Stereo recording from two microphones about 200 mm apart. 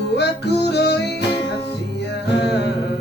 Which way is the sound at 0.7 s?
55° left (ahead or behind).